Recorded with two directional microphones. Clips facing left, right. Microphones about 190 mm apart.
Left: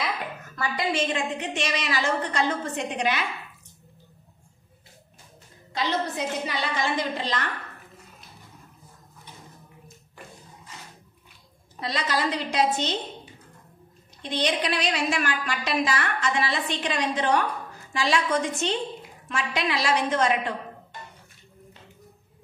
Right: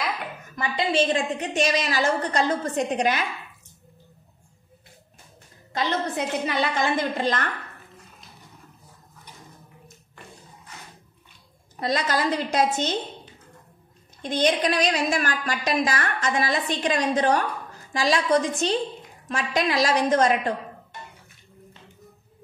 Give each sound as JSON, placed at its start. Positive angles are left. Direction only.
{"t": 0.6, "sound": "a woman's voice", "side_deg": -30}
{"t": 5.7, "sound": "a woman's voice", "side_deg": -55}
{"t": 11.8, "sound": "a woman's voice", "side_deg": -45}
{"t": 14.2, "sound": "a woman's voice", "side_deg": -45}